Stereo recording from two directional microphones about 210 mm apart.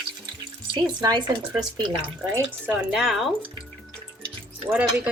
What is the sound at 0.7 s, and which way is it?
Speech, 20° right (ahead or behind).